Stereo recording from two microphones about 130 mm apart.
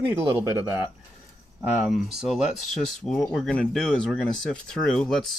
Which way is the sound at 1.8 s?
Centre (ahead or behind).